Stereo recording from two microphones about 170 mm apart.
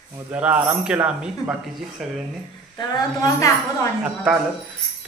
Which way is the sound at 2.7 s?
20° left (ahead or behind).